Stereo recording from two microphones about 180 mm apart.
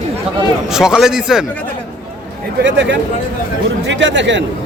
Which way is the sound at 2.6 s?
75° right (ahead or behind).